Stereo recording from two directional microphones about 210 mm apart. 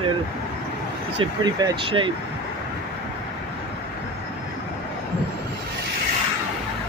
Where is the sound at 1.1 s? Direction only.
25° right (ahead or behind).